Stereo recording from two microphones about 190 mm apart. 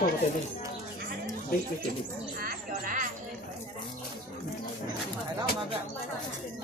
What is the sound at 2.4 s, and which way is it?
Speech, 45° right (ahead or behind).